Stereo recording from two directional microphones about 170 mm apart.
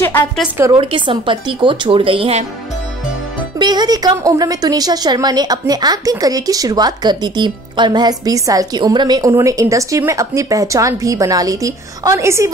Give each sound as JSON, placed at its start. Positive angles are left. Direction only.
{"t": 0.0, "sound": "a sound", "side_deg": 10}
{"t": 0.7, "sound": "speech", "side_deg": -30}
{"t": 3.5, "sound": "a woman's voice", "side_deg": -25}